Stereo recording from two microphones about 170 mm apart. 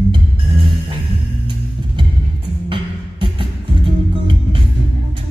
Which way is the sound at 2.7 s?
30° right (ahead or behind).